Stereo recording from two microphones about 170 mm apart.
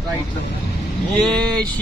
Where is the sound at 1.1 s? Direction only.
Centre (ahead or behind).